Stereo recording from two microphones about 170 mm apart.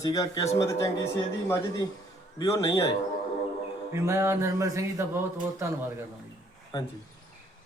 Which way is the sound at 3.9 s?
20° right (ahead or behind).